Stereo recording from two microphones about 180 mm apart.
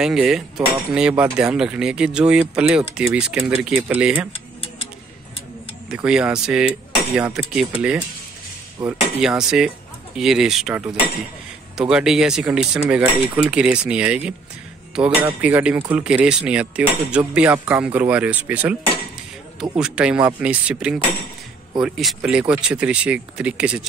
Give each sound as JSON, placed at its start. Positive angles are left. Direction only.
{"t": 0.0, "sound": "speech", "side_deg": -5}
{"t": 5.9, "sound": "speech", "side_deg": -5}
{"t": 8.8, "sound": "speech", "side_deg": -25}
{"t": 9.2, "sound": "speech", "side_deg": -5}
{"t": 19.8, "sound": "speech", "side_deg": -5}